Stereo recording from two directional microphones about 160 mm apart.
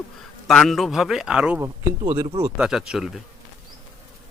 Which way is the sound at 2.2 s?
40° right (ahead or behind).